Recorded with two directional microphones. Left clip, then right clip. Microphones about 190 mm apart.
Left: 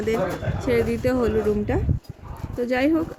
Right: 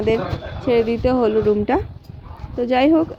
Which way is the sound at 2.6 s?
20° right (ahead or behind).